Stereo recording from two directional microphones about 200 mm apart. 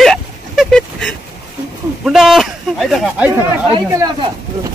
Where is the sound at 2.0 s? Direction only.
Centre (ahead or behind).